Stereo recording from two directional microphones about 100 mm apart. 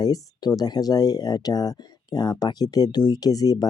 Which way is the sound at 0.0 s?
40° left (ahead or behind).